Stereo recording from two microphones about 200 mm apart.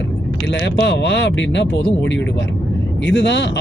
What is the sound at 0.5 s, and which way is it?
Speech, 60° left (ahead or behind).